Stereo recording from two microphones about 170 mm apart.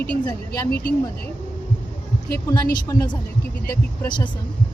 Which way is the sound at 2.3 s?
20° left (ahead or behind).